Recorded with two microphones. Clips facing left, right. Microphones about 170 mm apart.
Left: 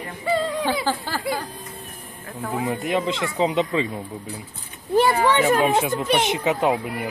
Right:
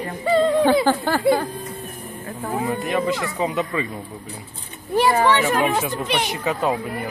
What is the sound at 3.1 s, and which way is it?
Speech, 25° left (ahead or behind).